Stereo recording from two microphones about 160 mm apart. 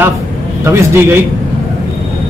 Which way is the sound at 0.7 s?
15° right (ahead or behind).